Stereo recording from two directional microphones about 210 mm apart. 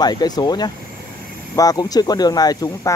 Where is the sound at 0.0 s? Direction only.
20° left (ahead or behind).